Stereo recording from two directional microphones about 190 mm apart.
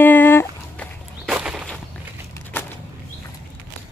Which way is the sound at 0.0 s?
10° left (ahead or behind).